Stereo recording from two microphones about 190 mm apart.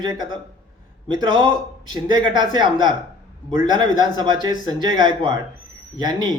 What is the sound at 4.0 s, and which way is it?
A man's voice, 25° right (ahead or behind).